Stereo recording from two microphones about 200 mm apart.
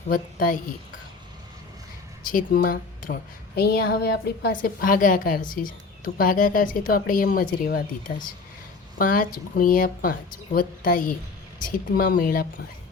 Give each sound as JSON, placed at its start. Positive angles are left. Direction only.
{"t": 0.1, "sound": "a woman's voice", "side_deg": 45}
{"t": 2.2, "sound": "a woman's voice", "side_deg": 45}